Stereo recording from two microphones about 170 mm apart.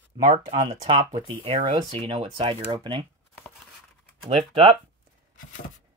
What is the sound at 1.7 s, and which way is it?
Speech, 30° right (ahead or behind).